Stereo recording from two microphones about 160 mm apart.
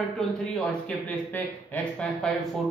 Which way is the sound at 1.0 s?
10° left (ahead or behind).